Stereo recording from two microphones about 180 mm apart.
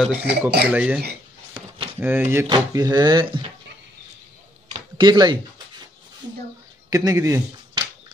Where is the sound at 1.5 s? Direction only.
30° right (ahead or behind).